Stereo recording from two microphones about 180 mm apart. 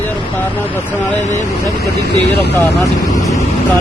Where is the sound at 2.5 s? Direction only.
15° left (ahead or behind).